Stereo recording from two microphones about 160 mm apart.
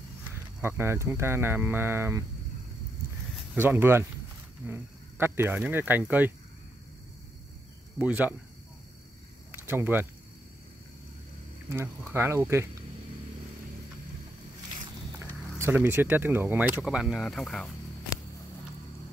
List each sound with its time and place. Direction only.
0.6 s speech: 15° right (ahead or behind)
3.5 s speech: 15° right (ahead or behind)
8.0 s speech: 10° right (ahead or behind)
9.5 s speech: 15° right (ahead or behind)
12.1 s speech: 15° right (ahead or behind)
15.1 s speech: 15° right (ahead or behind); by 17.6 s centre (ahead or behind)